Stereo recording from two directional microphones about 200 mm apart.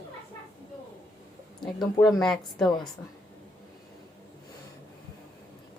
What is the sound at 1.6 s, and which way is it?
A woman's voice, centre (ahead or behind).